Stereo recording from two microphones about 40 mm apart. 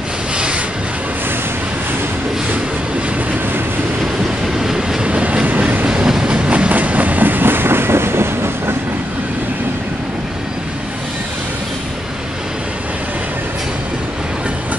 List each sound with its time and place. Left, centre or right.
4.6 s train: centre
5.0 s train: right
5.9 s train: centre
6.7 s train: right